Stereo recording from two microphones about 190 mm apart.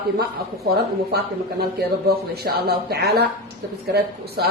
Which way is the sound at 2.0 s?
55° right (ahead or behind).